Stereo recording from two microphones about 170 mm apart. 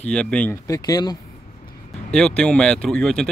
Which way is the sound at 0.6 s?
20° left (ahead or behind).